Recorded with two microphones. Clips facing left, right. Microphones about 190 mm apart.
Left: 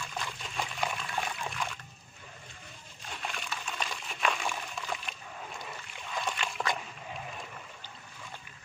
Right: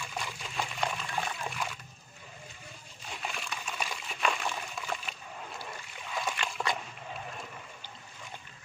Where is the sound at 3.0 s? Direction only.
5° right (ahead or behind).